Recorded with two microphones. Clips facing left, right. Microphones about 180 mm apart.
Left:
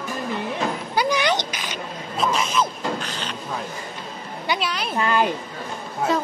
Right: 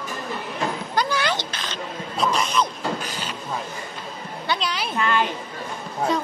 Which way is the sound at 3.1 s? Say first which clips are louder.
Left 1 dB; 10° right (ahead or behind).